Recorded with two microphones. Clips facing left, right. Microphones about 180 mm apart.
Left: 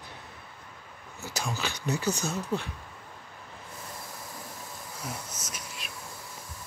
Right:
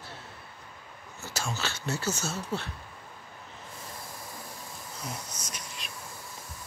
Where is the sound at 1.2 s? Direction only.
15° left (ahead or behind).